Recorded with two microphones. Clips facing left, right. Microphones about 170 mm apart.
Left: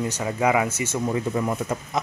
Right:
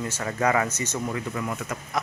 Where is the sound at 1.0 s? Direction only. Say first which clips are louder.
Left 7 dB; 25° left (ahead or behind).